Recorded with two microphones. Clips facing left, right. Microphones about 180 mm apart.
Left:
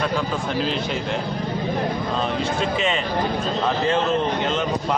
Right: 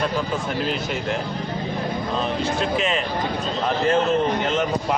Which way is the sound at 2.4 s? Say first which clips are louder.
Even; centre (ahead or behind).